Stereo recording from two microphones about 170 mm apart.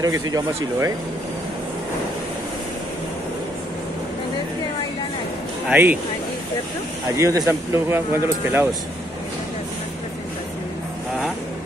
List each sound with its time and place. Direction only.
0.0 s speech: 20° right (ahead or behind)
5.7 s speech: 10° right (ahead or behind)
7.2 s speech: 20° right (ahead or behind)